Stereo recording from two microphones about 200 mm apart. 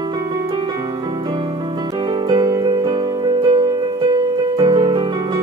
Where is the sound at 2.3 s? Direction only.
20° right (ahead or behind).